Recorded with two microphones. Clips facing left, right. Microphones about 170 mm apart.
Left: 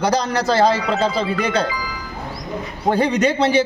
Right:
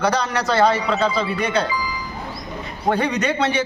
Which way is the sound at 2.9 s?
30° left (ahead or behind).